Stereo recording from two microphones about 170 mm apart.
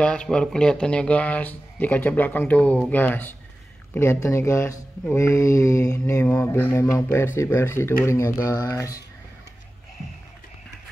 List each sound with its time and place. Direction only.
0.0 s mantra: 5° left (ahead or behind)